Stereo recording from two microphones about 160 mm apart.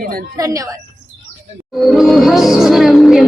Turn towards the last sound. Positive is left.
turn(degrees=0)  # may be behind; listen again after turning